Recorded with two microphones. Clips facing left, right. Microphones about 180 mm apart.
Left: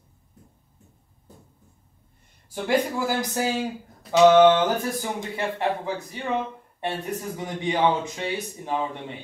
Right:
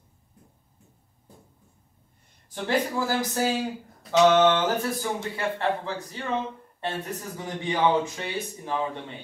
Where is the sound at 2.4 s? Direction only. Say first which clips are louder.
Left 3 dB; 15° left (ahead or behind).